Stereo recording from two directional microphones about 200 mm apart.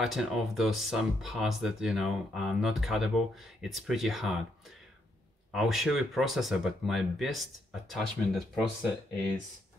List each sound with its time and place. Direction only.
0.0 s speech: centre (ahead or behind)